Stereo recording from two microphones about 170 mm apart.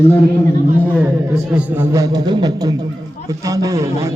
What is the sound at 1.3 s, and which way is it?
A man's voice, 10° right (ahead or behind).